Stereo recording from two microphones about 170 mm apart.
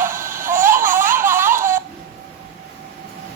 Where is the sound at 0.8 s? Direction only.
15° right (ahead or behind).